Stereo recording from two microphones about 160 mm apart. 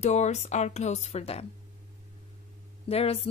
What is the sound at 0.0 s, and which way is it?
A woman's voice, 45° left (ahead or behind).